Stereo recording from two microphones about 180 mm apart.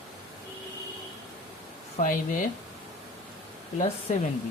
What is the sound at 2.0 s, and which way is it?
Speech, 40° left (ahead or behind).